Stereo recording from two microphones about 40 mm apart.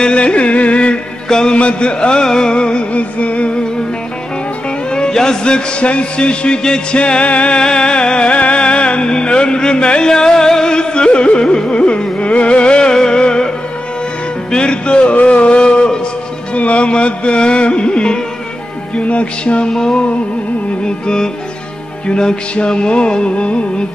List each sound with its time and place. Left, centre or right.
0.0 s music: left
1.3 s music: left
4.9 s music: centre
7.0 s music: left
7.5 s music: left
14.5 s music: left
15.2 s a sound: left
16.5 s music: left
19.7 s music: centre